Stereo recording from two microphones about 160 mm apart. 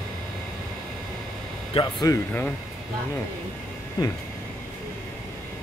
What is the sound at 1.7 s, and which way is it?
Speech, 30° left (ahead or behind).